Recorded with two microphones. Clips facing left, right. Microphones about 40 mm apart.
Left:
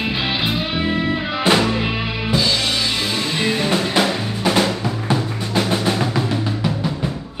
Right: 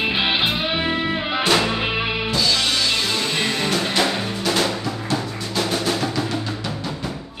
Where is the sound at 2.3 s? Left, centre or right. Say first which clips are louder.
Left 3 dB; centre.